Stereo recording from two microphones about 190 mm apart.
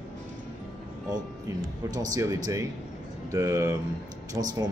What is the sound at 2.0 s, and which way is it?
A man's voice, 15° right (ahead or behind).